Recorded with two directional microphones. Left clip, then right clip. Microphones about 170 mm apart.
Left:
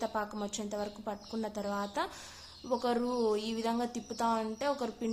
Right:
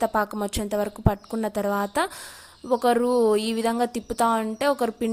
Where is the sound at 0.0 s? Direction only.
45° right (ahead or behind).